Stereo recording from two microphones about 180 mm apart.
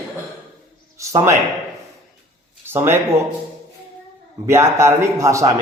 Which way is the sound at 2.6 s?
15° right (ahead or behind).